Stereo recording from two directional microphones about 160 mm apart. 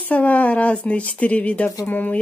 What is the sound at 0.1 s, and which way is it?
A woman's voice, 10° left (ahead or behind).